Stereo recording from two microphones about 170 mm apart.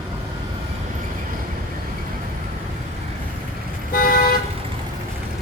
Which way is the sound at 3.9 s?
60° left (ahead or behind).